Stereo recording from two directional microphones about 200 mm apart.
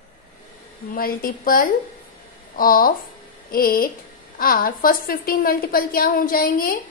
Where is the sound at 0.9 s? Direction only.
45° left (ahead or behind).